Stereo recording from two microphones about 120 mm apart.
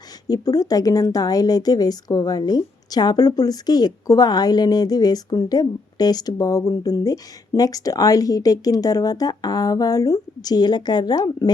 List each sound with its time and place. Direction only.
0.3 s speech: 30° left (ahead or behind)